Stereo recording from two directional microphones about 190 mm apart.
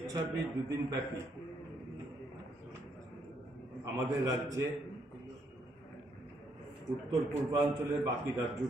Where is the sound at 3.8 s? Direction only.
15° right (ahead or behind).